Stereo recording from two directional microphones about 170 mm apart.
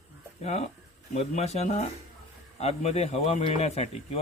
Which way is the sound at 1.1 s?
40° left (ahead or behind).